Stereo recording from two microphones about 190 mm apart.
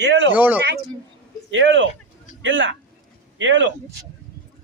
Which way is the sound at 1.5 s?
85° right.